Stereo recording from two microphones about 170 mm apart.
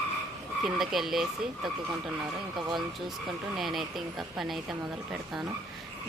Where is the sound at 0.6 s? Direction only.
Centre (ahead or behind).